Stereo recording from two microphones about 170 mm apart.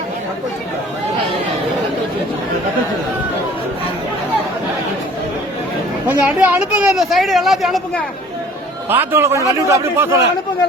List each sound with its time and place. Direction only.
6.1 s speech: 10° right (ahead or behind)
8.9 s a man's voice: 10° right (ahead or behind)